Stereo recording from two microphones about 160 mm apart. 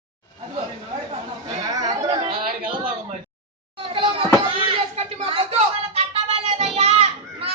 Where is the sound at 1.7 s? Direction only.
25° right (ahead or behind).